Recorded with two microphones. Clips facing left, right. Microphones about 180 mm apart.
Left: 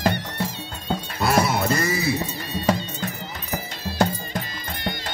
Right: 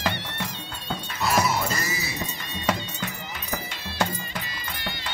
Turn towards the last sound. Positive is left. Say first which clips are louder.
# left 5 dB
turn(degrees=40)  # may be behind; listen again after turning